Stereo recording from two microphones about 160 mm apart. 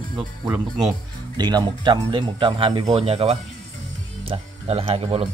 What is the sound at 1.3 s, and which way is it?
Speech, 25° right (ahead or behind).